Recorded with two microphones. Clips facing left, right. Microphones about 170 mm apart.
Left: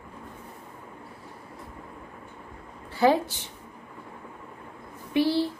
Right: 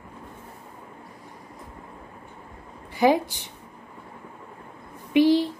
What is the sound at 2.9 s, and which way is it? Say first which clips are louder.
Speech: right 2 dB; 15° right (ahead or behind).